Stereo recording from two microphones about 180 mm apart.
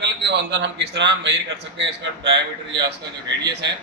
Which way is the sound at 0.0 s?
70° right (ahead or behind).